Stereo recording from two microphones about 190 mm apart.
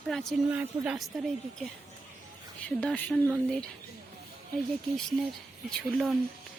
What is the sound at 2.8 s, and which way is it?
Speech, 5° left (ahead or behind).